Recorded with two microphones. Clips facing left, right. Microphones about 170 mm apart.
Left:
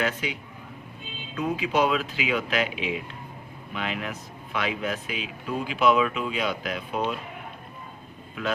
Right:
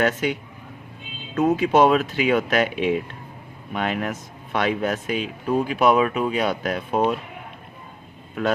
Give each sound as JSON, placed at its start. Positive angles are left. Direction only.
{"t": 0.0, "sound": "speech", "side_deg": -50}
{"t": 1.4, "sound": "speech", "side_deg": -45}
{"t": 8.4, "sound": "speech", "side_deg": -45}